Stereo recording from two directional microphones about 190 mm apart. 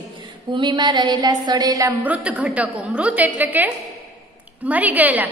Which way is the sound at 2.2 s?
5° right (ahead or behind).